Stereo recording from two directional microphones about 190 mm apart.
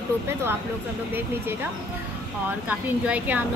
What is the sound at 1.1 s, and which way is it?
Speech, 10° right (ahead or behind).